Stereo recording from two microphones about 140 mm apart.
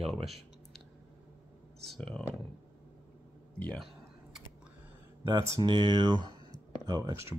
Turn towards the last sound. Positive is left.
turn(degrees=-25)  # may be behind; listen again after turning